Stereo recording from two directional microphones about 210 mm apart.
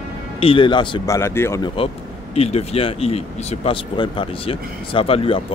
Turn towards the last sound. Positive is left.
turn(degrees=25)  # may be behind; listen again after turning